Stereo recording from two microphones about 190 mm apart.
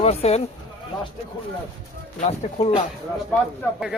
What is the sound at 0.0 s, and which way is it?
Speech, 35° left (ahead or behind).